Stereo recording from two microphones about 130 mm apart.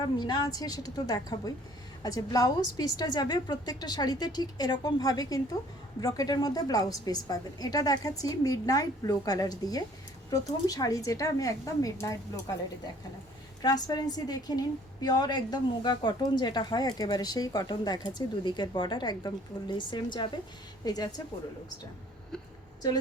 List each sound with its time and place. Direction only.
0.2 s a woman's voice: 30° left (ahead or behind)
13.6 s a woman's voice: 30° left (ahead or behind)